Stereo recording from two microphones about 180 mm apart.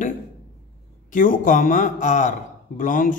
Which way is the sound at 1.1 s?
50° left (ahead or behind).